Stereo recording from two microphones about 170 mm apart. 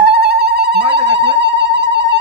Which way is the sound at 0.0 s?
75° right (ahead or behind).